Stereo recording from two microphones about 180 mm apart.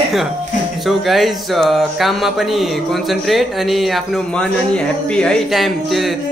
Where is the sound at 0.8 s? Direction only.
Centre (ahead or behind).